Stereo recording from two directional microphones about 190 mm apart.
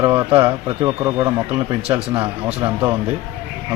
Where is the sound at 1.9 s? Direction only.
25° right (ahead or behind).